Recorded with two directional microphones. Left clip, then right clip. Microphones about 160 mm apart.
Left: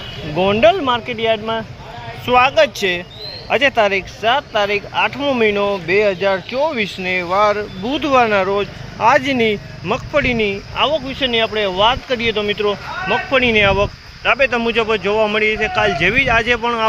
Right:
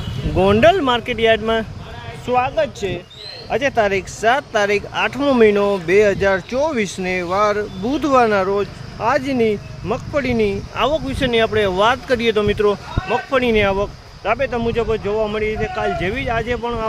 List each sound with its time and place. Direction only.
0.3 s speech: 35° right (ahead or behind)
2.2 s speech: centre (ahead or behind)
3.5 s speech: 10° right (ahead or behind)
3.8 s speech: 30° right (ahead or behind)
10.8 s speech: 40° right (ahead or behind); by 16.8 s 5° right (ahead or behind)